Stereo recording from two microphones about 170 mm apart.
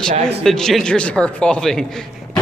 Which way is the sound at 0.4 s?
Centre (ahead or behind).